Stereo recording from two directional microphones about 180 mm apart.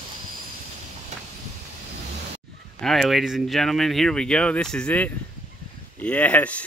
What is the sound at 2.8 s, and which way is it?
Speech, centre (ahead or behind).